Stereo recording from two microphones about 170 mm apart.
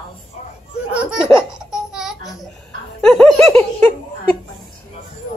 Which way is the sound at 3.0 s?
5° left (ahead or behind).